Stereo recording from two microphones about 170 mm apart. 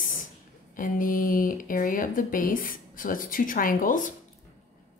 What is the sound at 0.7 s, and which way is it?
Speech, 55° left (ahead or behind).